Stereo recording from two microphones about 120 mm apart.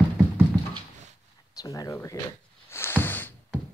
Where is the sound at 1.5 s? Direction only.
30° left (ahead or behind).